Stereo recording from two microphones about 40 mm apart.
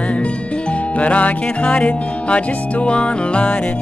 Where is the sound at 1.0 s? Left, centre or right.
Left.